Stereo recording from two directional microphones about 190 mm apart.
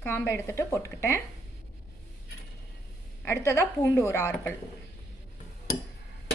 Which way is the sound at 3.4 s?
15° left (ahead or behind).